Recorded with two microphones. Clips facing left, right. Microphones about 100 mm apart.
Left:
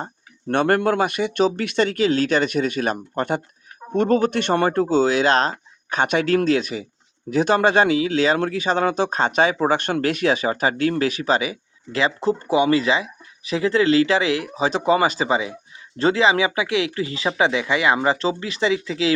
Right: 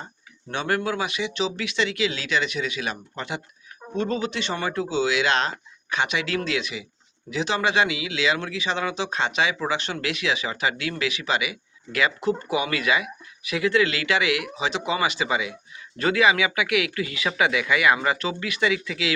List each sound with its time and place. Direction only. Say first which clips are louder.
0.0 s speech: left 9 dB; 55° left (ahead or behind); by 19.1 s 30° left (ahead or behind)